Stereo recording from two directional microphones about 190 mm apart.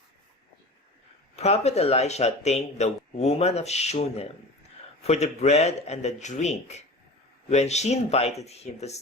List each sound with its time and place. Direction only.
1.4 s speech: 35° left (ahead or behind)